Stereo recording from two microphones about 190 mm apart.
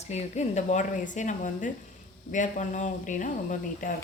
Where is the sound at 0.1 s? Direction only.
35° left (ahead or behind).